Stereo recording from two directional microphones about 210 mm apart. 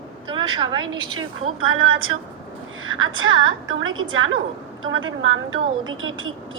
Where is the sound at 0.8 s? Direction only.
70° right (ahead or behind).